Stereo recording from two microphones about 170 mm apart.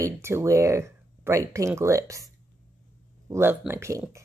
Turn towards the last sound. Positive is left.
turn(degrees=-15)  # may be behind; listen again after turning